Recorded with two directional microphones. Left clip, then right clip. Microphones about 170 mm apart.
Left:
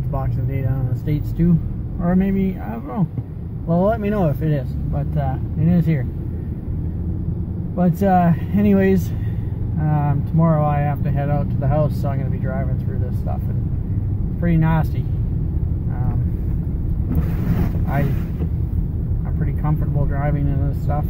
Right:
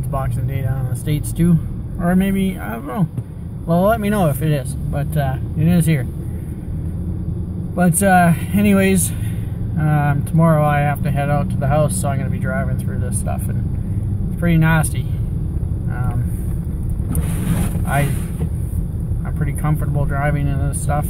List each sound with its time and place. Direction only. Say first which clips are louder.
1.0 s speech: right 2 dB; 15° right (ahead or behind)
7.7 s speech: right 3 dB; 25° right (ahead or behind)
14.4 s speech: right 4 dB; 20° right (ahead or behind)
19.4 s speech: right 2 dB; 20° right (ahead or behind)